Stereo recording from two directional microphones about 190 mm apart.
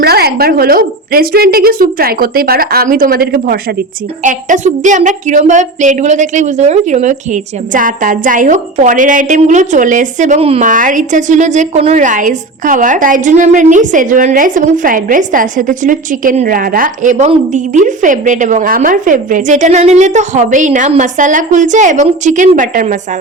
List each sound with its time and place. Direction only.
0.0 s a woman's voice: 55° right (ahead or behind)
4.2 s a woman's voice: 45° right (ahead or behind)